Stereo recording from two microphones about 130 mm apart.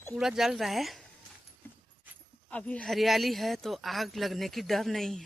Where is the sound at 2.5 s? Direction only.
10° left (ahead or behind).